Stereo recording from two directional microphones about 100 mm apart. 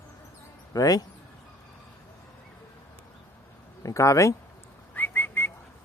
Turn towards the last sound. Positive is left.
turn(degrees=20)  # may be behind; listen again after turning